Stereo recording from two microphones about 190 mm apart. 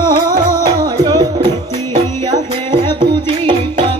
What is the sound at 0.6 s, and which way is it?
Music, 20° right (ahead or behind).